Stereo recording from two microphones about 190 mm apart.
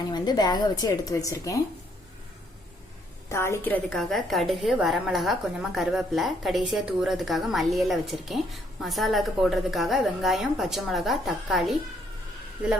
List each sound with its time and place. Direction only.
0.1 s a woman's voice: 20° left (ahead or behind)
3.2 s a woman's voice: 15° left (ahead or behind)